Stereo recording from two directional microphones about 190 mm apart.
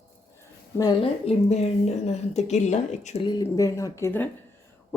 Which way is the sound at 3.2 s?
20° left (ahead or behind).